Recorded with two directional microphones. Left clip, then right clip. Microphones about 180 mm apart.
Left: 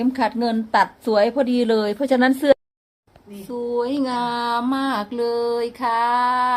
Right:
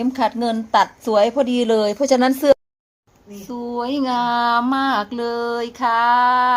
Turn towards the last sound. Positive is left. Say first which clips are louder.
# right 4 dB
turn(degrees=-10)  # may be behind; listen again after turning